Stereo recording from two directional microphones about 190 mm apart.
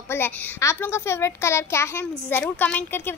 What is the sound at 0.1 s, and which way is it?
A child's voice, 10° left (ahead or behind).